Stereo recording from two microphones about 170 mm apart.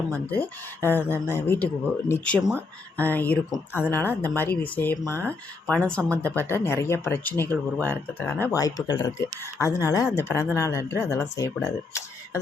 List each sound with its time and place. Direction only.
0.1 s speech: 10° left (ahead or behind)
8.5 s speech: 20° left (ahead or behind)